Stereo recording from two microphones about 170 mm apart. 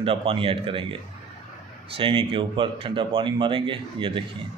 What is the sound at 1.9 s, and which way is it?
Speech, 30° right (ahead or behind).